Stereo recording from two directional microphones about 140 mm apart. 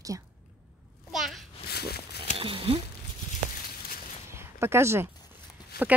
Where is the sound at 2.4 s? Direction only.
40° right (ahead or behind).